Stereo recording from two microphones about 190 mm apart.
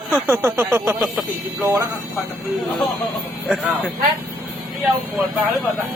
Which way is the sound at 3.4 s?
Centre (ahead or behind).